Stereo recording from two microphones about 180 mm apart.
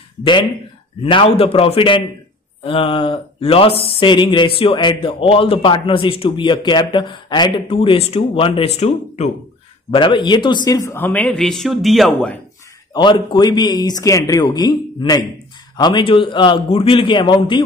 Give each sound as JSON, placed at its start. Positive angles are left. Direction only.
{"t": 1.1, "sound": "speech", "side_deg": 30}
{"t": 12.9, "sound": "speech", "side_deg": 25}